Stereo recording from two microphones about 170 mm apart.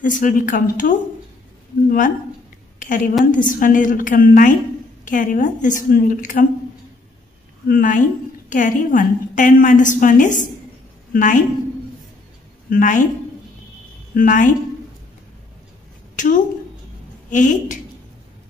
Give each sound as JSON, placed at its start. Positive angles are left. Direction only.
{"t": 0.0, "sound": "a woman's voice", "side_deg": 50}
{"t": 7.6, "sound": "a woman's voice", "side_deg": 55}
{"t": 12.6, "sound": "a woman's voice", "side_deg": 55}
{"t": 14.1, "sound": "a woman's voice", "side_deg": 50}
{"t": 16.2, "sound": "a sound", "side_deg": 50}
{"t": 17.3, "sound": "a woman's voice", "side_deg": 50}